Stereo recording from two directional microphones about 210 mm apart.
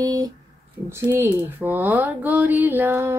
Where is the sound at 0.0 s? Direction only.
20° right (ahead or behind).